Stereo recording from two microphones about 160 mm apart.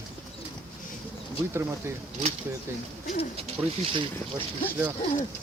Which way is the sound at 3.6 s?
15° right (ahead or behind).